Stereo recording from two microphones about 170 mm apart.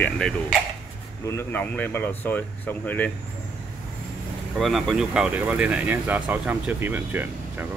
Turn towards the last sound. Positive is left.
turn(degrees=-10)  # may be behind; listen again after turning